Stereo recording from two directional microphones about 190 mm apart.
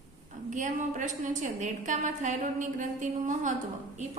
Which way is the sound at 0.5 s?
40° right (ahead or behind).